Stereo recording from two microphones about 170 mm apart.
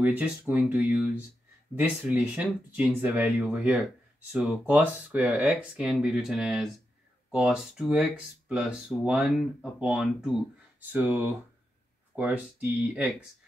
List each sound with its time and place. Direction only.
0.0 s speech: 10° right (ahead or behind)